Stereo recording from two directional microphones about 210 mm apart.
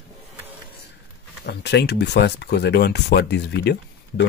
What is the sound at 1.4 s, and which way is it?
Speech, 50° left (ahead or behind).